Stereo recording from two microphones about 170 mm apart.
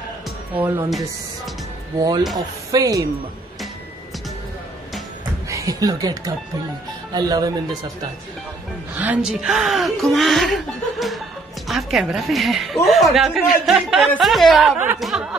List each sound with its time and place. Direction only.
0.6 s speech: 15° right (ahead or behind)
0.8 s a woman's voice: centre (ahead or behind)
2.3 s speech: 20° right (ahead or behind)
5.5 s speech: 20° right (ahead or behind)
9.0 s a woman's voice: 5° right (ahead or behind)
15.0 s a sound: centre (ahead or behind)